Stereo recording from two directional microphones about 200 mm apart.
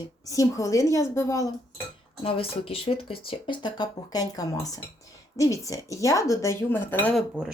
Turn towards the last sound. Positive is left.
turn(degrees=0)  # may be behind; listen again after turning